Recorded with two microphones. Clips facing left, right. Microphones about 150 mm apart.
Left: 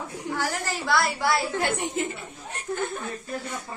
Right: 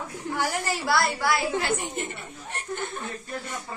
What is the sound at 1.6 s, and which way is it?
Speech, 65° left (ahead or behind).